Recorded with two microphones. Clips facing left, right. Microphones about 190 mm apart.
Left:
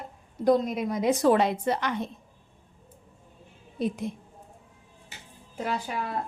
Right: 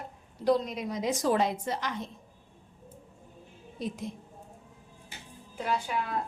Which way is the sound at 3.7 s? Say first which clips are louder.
Left 6 dB; 60° left (ahead or behind).